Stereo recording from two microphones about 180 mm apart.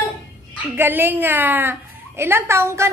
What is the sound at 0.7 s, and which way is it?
A woman's voice, 10° right (ahead or behind).